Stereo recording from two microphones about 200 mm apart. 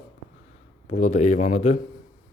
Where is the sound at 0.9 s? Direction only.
35° left (ahead or behind).